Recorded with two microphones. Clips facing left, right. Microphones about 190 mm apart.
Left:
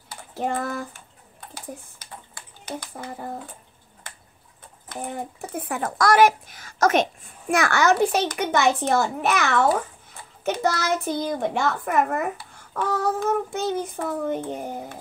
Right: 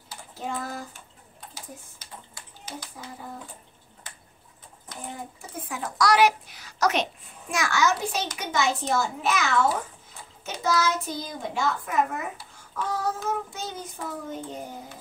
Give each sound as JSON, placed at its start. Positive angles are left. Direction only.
{"t": 0.1, "sound": "typing", "side_deg": 60}
{"t": 2.6, "sound": "a child's voice", "side_deg": 55}
{"t": 4.8, "sound": "a child's voice", "side_deg": 60}